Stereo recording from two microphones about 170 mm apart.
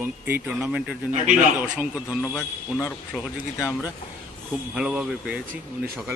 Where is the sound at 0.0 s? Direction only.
10° right (ahead or behind).